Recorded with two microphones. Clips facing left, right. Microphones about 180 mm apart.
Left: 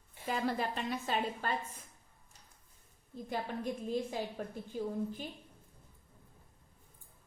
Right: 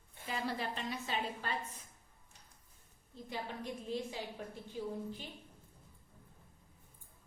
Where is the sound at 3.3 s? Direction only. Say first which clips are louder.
Left 5 dB; 50° left (ahead or behind).